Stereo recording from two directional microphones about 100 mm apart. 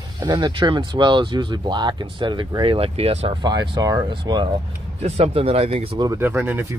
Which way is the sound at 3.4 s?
45° right (ahead or behind).